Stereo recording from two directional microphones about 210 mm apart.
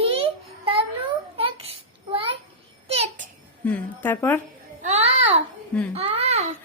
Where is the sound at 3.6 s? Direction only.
10° left (ahead or behind).